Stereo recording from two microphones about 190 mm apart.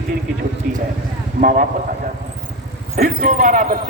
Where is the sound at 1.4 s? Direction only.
45° right (ahead or behind).